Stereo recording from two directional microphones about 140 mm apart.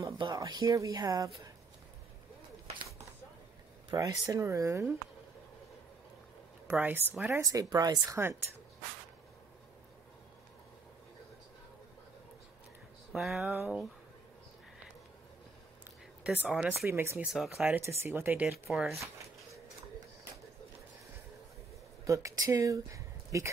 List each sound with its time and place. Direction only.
0.2 s speech: 30° right (ahead or behind)
3.9 s speech: 25° right (ahead or behind)
6.7 s speech: 10° right (ahead or behind)
7.4 s speech: 25° right (ahead or behind)
13.1 s speech: centre (ahead or behind)
16.3 s speech: 5° right (ahead or behind)
17.3 s speech: centre (ahead or behind)
17.6 s speech: 15° right (ahead or behind)
18.5 s speech: centre (ahead or behind)
22.0 s speech: 20° right (ahead or behind)